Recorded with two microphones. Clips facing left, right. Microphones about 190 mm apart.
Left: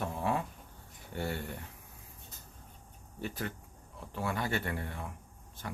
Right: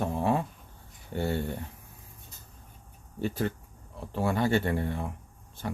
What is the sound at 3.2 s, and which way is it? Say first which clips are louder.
Speech: right 8 dB; 30° right (ahead or behind).